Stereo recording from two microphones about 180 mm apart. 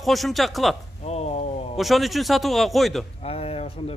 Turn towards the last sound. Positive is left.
turn(degrees=35)  # may be behind; listen again after turning